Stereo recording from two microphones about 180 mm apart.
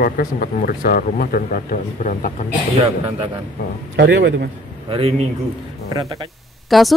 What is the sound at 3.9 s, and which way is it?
Speech, 70° right (ahead or behind).